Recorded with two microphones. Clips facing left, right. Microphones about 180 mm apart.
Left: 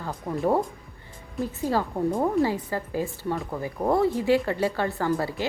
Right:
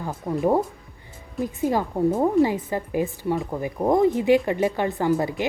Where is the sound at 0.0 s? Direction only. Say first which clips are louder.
Right 3 dB; 10° right (ahead or behind).